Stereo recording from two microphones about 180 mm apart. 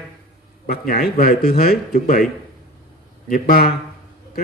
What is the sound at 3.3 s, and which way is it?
Speech, 50° left (ahead or behind).